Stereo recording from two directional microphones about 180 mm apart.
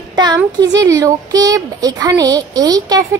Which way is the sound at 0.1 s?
25° right (ahead or behind).